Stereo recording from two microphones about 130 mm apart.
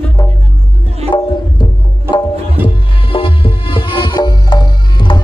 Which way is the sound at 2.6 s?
15° right (ahead or behind).